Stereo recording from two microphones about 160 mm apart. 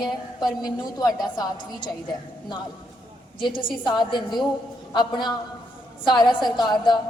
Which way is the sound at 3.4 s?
30° left (ahead or behind).